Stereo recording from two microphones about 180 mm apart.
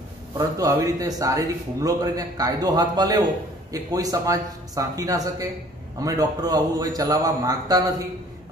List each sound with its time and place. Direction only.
0.4 s a man's voice: 20° right (ahead or behind)